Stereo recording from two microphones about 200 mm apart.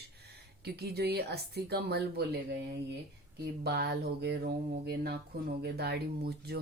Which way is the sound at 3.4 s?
50° right (ahead or behind).